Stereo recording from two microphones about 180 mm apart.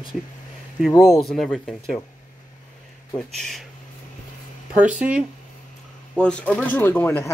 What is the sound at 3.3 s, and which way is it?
Speech, centre (ahead or behind).